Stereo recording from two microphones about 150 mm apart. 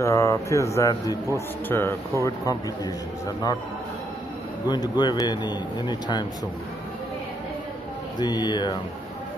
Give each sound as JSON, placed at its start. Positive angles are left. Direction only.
{"t": 0.0, "sound": "a man's voice", "side_deg": 20}
{"t": 4.6, "sound": "a man's voice", "side_deg": 30}
{"t": 8.2, "sound": "a man's voice", "side_deg": 30}